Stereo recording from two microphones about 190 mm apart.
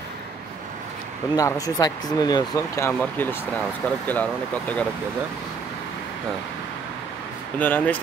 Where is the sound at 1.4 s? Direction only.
20° left (ahead or behind).